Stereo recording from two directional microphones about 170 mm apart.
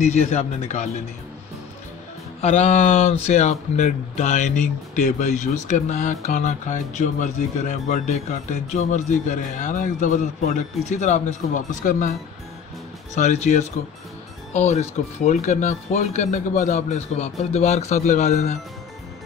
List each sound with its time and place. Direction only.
0.0 s speech: 45° left (ahead or behind)
2.4 s speech: 40° left (ahead or behind)
13.1 s speech: 45° left (ahead or behind)